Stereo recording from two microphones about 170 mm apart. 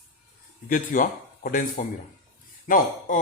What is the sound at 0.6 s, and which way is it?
A man's voice, 55° left (ahead or behind).